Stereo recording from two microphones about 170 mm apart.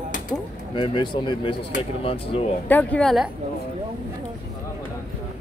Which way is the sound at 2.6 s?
10° left (ahead or behind).